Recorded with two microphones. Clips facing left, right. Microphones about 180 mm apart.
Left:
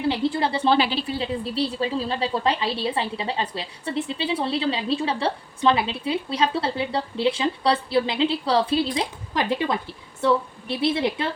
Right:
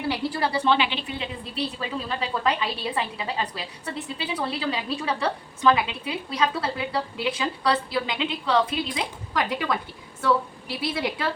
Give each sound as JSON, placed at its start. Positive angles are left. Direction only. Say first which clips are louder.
{"t": 0.1, "sound": "a woman's voice", "louder": "left 1 dB", "side_deg": 25}
{"t": 0.7, "sound": "a woman's voice", "louder": "left 3 dB", "side_deg": 35}